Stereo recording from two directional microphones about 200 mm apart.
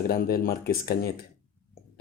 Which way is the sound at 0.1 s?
50° left (ahead or behind).